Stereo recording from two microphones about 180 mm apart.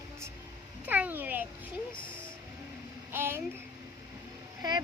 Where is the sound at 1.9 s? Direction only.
25° left (ahead or behind).